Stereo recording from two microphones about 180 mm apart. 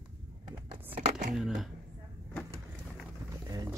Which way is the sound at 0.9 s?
40° right (ahead or behind).